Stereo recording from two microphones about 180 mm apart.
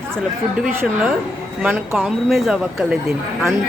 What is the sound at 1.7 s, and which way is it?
Speech, 10° right (ahead or behind).